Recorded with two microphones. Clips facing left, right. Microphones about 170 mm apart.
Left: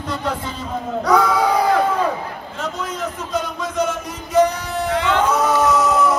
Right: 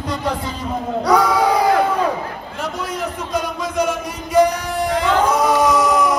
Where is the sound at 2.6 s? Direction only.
10° right (ahead or behind).